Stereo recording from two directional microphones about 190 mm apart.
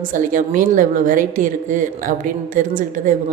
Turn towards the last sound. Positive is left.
turn(degrees=-45)  # may be behind; listen again after turning